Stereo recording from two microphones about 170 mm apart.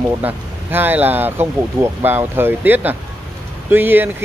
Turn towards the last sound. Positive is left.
turn(degrees=-10)  # may be behind; listen again after turning